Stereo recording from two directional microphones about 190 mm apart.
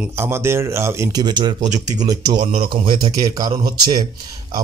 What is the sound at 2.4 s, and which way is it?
Speech, 30° right (ahead or behind).